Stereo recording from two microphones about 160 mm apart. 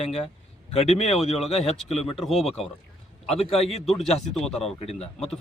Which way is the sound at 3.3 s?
40° left (ahead or behind).